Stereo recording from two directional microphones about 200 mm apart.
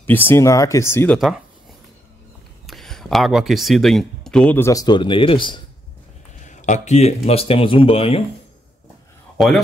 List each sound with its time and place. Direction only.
0.0 s speech: 10° left (ahead or behind)
2.6 s speech: centre (ahead or behind); by 5.6 s 25° left (ahead or behind)
6.4 s speech: 35° left (ahead or behind)
9.4 s speech: centre (ahead or behind)